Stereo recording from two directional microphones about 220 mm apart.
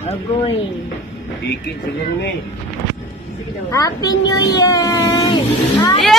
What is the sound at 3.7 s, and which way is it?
Speech, 15° left (ahead or behind).